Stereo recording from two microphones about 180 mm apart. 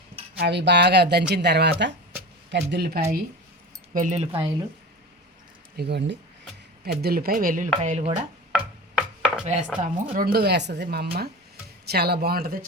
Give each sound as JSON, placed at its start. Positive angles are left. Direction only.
{"t": 0.3, "sound": "a woman's voice", "side_deg": -70}
{"t": 3.9, "sound": "speech", "side_deg": -40}
{"t": 5.7, "sound": "speech", "side_deg": -65}
{"t": 7.8, "sound": "speech", "side_deg": -40}
{"t": 8.5, "sound": "chopping", "side_deg": -5}
{"t": 9.4, "sound": "chopping", "side_deg": -40}
{"t": 9.8, "sound": "a woman's voice", "side_deg": -50}